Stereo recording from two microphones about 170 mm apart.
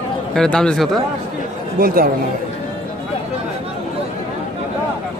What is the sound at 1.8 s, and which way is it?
Speech, 55° right (ahead or behind).